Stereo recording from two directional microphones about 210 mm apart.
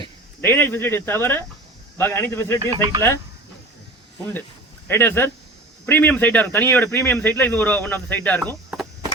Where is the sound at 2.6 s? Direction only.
15° right (ahead or behind).